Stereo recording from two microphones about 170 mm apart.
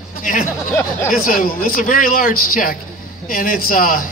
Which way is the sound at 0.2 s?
50° left (ahead or behind).